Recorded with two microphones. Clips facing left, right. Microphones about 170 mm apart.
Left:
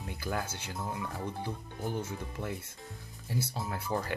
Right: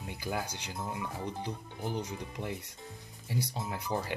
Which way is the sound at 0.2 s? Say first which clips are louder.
Even; 15° right (ahead or behind).